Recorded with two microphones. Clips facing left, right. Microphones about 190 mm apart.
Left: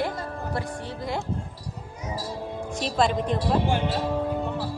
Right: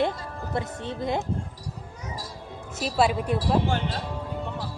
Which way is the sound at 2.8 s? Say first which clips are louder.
Right 1 dB; 5° right (ahead or behind).